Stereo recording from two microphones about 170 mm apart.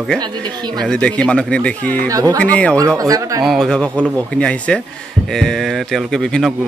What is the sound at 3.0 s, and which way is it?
Speech, 20° right (ahead or behind).